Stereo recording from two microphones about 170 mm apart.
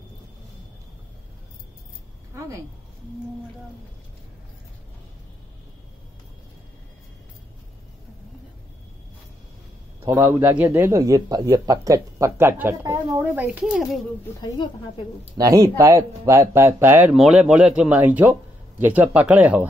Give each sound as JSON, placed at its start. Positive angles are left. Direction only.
{"t": 2.3, "sound": "speech", "side_deg": -20}
{"t": 10.0, "sound": "speech", "side_deg": -15}
{"t": 14.2, "sound": "a woman's voice", "side_deg": 25}
{"t": 15.3, "sound": "speech", "side_deg": -20}